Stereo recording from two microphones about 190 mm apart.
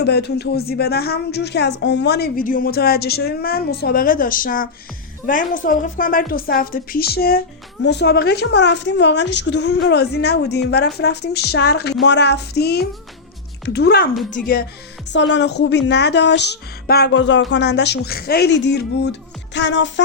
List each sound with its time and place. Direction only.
0.0 s a woman's voice: 60° left (ahead or behind)
15.1 s a woman's voice: 70° left (ahead or behind)